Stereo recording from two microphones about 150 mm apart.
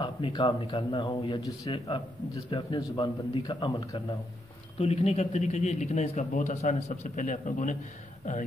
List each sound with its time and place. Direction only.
0.0 s speech: 30° left (ahead or behind)
4.7 s a man's voice: 45° left (ahead or behind); by 7.7 s 60° left (ahead or behind)